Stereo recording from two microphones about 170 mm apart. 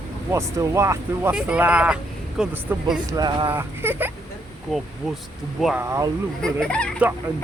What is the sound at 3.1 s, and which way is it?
Speech, 25° right (ahead or behind).